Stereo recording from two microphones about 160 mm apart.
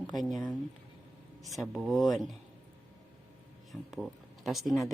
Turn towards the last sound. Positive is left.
turn(degrees=0)  # may be behind; listen again after turning